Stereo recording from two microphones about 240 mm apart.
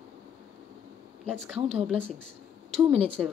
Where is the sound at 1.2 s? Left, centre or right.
Centre.